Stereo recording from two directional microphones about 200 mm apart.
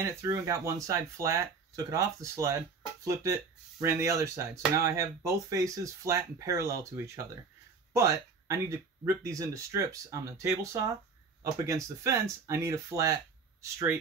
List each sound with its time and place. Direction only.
0.0 s speech: 15° right (ahead or behind)
7.9 s speech: 15° right (ahead or behind)